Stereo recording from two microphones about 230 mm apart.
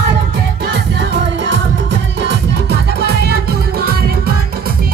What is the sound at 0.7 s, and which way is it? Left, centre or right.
Music, right.